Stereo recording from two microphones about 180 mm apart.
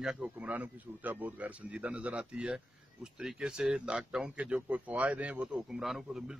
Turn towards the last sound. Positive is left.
turn(degrees=0)  # may be behind; listen again after turning